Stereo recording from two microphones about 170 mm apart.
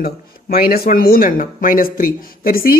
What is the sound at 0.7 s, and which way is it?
Speech, 60° left (ahead or behind).